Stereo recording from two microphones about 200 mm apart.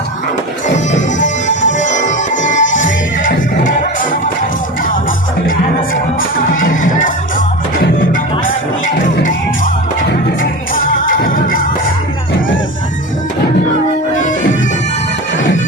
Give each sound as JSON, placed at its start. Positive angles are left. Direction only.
{"t": 0.9, "sound": "music", "side_deg": 35}
{"t": 6.5, "sound": "music", "side_deg": 40}